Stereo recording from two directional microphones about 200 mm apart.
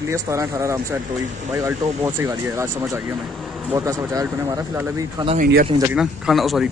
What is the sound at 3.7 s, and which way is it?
Speech, 15° right (ahead or behind).